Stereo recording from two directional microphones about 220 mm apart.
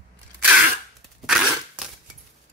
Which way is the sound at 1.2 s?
Centre (ahead or behind).